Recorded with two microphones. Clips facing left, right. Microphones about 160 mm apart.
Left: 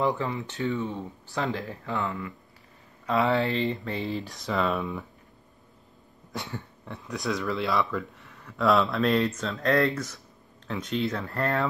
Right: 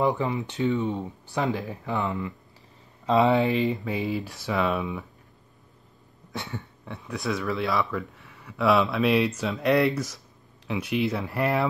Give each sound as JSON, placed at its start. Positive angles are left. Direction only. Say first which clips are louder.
{"t": 0.0, "sound": "speech", "louder": "right 2 dB", "side_deg": -15}
{"t": 6.3, "sound": "speech", "louder": "right 1 dB", "side_deg": 0}